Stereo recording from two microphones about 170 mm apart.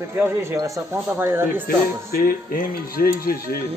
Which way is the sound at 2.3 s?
60° left (ahead or behind).